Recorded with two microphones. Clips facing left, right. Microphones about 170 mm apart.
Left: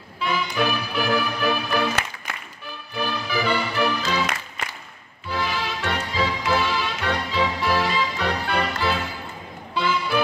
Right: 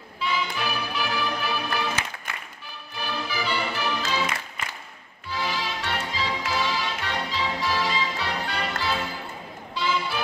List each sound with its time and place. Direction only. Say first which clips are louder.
0.2 s music: left 4 dB; 55° left (ahead or behind)
5.3 s music: left 3 dB; 55° left (ahead or behind)